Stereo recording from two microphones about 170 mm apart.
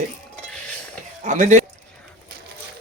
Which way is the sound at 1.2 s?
45° right (ahead or behind).